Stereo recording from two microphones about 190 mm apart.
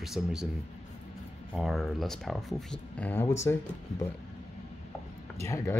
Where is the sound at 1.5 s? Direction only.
Centre (ahead or behind).